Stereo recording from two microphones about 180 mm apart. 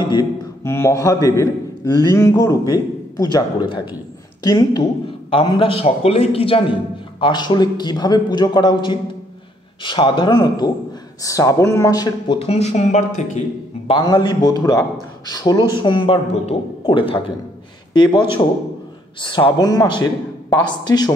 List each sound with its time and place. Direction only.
0.0 s a man's voice: 25° left (ahead or behind)
12.4 s speech: 35° left (ahead or behind)
13.8 s a man's voice: 25° left (ahead or behind)
19.2 s a man's voice: 25° left (ahead or behind)